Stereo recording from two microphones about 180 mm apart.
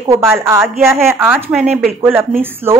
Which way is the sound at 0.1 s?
15° right (ahead or behind).